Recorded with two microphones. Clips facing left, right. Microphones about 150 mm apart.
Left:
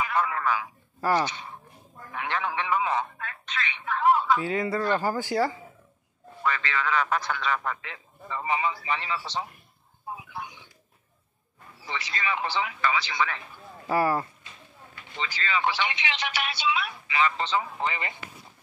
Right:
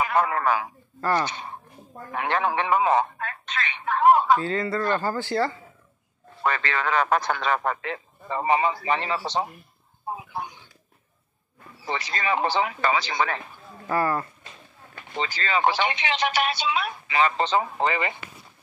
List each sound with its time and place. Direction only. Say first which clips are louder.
0.0 s speech: right 4 dB; 55° right (ahead or behind)
1.0 s speech: even; 10° left (ahead or behind)
2.1 s a man's voice: right 5 dB; 50° right (ahead or behind)
4.4 s speech: right 1 dB; 10° left (ahead or behind)
6.4 s a man's voice: right 3 dB; 50° right (ahead or behind)
10.0 s a sound: right 5 dB; 40° right (ahead or behind)
11.8 s a man's voice: right 4 dB; 45° right (ahead or behind)
13.8 s speech: even; 10° left (ahead or behind)
15.1 s a man's voice: right 4 dB; 45° right (ahead or behind)
17.8 s speech: right 6 dB; 75° right (ahead or behind)